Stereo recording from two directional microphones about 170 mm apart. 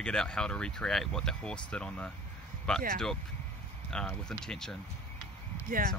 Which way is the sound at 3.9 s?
5° left (ahead or behind).